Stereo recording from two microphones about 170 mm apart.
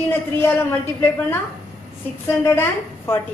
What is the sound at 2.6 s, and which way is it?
Speech, 15° left (ahead or behind).